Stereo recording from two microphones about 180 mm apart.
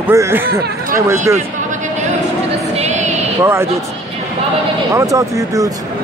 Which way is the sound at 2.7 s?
40° right (ahead or behind).